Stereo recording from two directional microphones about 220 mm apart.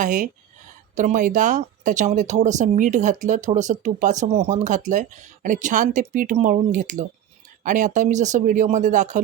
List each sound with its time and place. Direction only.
0.0 s speech: 35° right (ahead or behind)